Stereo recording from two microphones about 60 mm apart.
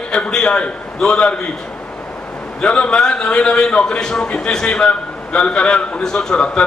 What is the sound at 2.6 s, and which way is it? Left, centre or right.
A man's voice, centre.